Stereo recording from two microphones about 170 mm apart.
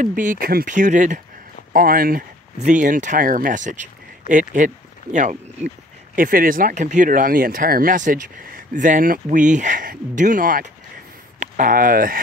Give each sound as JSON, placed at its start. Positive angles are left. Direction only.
{"t": 0.0, "sound": "speech", "side_deg": -50}
{"t": 1.7, "sound": "speech", "side_deg": -55}